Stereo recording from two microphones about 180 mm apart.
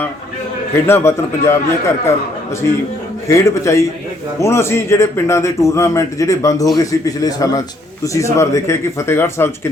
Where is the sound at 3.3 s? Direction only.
15° left (ahead or behind).